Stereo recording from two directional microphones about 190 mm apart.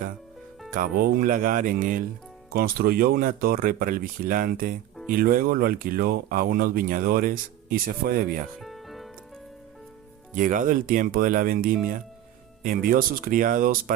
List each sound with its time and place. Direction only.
0.7 s speech: 50° right (ahead or behind)
8.6 s music: centre (ahead or behind)
10.3 s speech: 45° right (ahead or behind)